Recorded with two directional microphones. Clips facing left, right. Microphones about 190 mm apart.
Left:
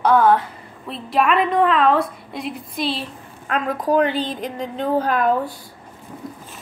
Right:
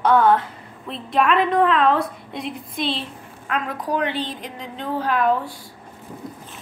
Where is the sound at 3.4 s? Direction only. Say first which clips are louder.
Left 4 dB; 40° left (ahead or behind).